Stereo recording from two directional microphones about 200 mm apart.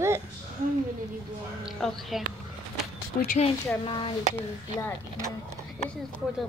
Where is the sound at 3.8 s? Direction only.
25° left (ahead or behind).